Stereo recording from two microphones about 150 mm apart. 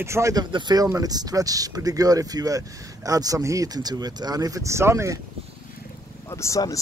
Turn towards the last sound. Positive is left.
turn(degrees=20)  # may be behind; listen again after turning